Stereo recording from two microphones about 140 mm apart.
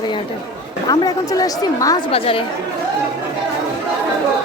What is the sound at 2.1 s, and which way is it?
Speech, 45° left (ahead or behind).